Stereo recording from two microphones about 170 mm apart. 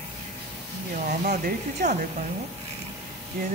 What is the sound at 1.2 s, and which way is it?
Speech, 45° right (ahead or behind).